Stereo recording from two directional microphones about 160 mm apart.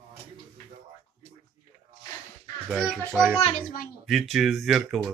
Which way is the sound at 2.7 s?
Centre (ahead or behind).